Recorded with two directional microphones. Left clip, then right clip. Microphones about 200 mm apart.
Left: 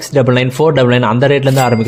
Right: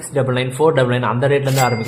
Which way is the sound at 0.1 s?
35° left (ahead or behind).